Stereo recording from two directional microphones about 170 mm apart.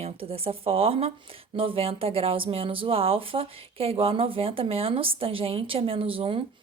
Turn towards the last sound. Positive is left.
turn(degrees=-30)  # may be behind; listen again after turning